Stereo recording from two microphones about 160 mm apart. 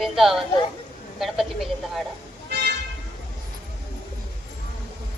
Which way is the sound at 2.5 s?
90° right.